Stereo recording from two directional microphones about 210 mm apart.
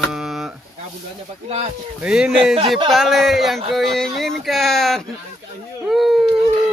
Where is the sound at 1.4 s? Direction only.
30° right (ahead or behind).